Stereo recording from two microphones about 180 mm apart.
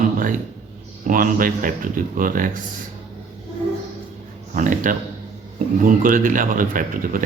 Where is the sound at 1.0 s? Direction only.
50° right (ahead or behind).